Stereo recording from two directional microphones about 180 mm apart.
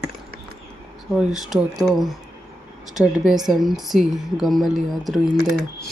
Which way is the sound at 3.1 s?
Centre (ahead or behind).